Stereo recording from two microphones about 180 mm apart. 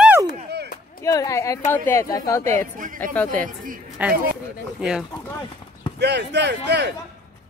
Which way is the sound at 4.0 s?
5° right (ahead or behind).